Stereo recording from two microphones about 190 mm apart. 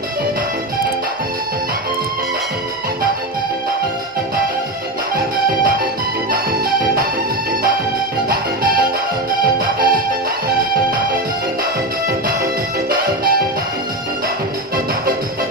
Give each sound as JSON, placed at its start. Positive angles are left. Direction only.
{"t": 6.3, "sound": "music", "side_deg": -45}
{"t": 8.3, "sound": "music", "side_deg": -50}